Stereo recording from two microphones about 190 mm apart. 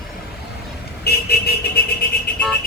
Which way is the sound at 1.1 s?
55° left (ahead or behind).